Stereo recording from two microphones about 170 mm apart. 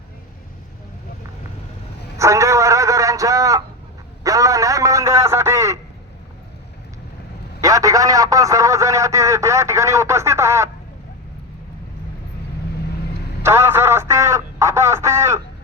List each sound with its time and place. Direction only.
2.1 s a sound: 15° right (ahead or behind)
4.2 s a man's voice: 20° right (ahead or behind)
7.6 s a man's voice: 20° right (ahead or behind)
13.4 s telephone: 15° right (ahead or behind)